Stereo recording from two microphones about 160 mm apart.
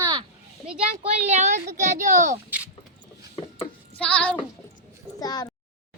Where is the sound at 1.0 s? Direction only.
45° right (ahead or behind).